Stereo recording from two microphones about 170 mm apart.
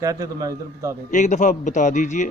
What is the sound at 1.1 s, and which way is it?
Speech, 45° left (ahead or behind).